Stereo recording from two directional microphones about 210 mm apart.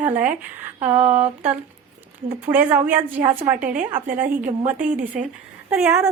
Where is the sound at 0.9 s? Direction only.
30° right (ahead or behind).